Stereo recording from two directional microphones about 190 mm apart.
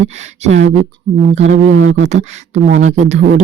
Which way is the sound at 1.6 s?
85° right.